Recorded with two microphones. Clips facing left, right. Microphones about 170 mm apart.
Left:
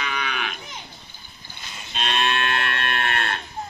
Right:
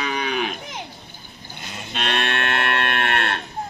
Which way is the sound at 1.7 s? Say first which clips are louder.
Right 2 dB; 65° right (ahead or behind).